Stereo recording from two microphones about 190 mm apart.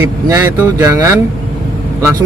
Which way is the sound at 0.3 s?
15° right (ahead or behind).